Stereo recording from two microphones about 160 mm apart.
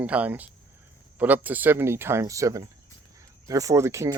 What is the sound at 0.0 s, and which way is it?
Speech, 10° right (ahead or behind).